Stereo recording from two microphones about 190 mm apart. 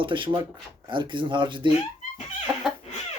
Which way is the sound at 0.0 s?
25° right (ahead or behind).